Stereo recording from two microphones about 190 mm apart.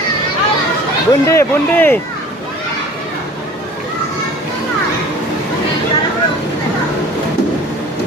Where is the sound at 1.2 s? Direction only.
15° left (ahead or behind).